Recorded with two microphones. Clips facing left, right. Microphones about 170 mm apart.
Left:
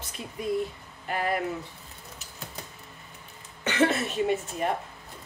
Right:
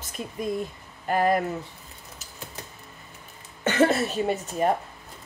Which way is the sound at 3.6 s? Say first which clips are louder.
Right 3 dB; 40° right (ahead or behind).